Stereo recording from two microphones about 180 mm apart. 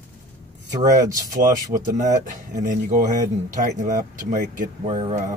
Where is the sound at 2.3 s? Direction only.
45° right (ahead or behind).